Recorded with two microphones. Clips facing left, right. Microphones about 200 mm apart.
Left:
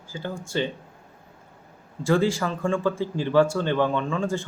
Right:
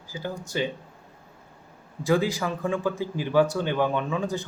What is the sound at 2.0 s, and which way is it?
A man's voice, 15° right (ahead or behind).